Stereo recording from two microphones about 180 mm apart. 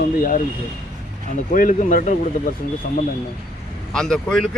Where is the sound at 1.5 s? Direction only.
50° left (ahead or behind).